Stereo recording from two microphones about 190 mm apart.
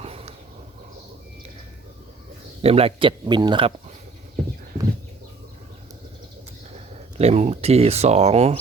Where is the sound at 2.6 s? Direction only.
30° right (ahead or behind).